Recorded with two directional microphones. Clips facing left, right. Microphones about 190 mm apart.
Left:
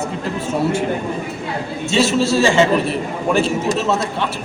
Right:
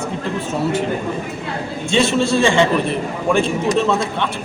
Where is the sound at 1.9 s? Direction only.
5° left (ahead or behind).